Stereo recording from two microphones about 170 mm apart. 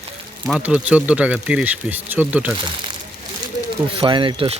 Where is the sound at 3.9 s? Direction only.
30° right (ahead or behind).